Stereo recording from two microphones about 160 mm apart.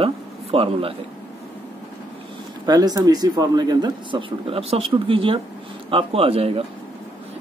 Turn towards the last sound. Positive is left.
turn(degrees=-35)  # may be behind; listen again after turning